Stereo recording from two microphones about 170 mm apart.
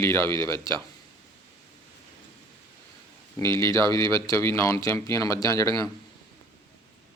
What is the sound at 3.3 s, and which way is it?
Speech, 15° left (ahead or behind).